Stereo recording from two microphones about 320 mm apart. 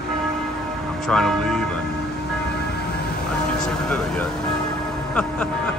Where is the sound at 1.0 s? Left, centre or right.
Centre.